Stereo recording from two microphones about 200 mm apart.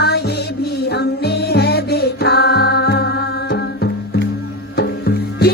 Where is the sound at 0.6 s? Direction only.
55° left (ahead or behind).